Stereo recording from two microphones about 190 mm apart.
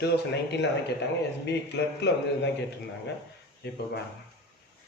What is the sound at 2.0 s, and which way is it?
Speech, 65° left (ahead or behind).